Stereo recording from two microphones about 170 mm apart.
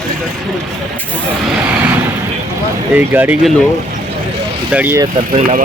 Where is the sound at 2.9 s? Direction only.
10° right (ahead or behind).